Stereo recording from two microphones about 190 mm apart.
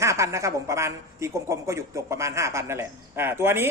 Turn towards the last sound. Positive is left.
turn(degrees=-15)  # may be behind; listen again after turning